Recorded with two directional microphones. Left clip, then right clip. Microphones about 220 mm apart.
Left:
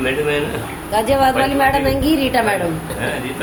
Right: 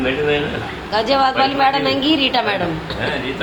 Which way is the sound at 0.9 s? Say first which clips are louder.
Left 1 dB; 20° left (ahead or behind).